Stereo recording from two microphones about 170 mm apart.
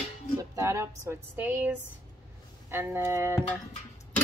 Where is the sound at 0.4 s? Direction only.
15° right (ahead or behind).